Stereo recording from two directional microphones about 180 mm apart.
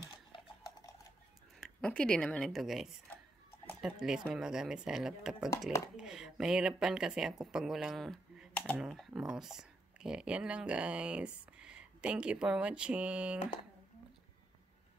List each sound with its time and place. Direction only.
0.3 s cutlery: 30° left (ahead or behind)
1.6 s a woman's voice: 5° left (ahead or behind)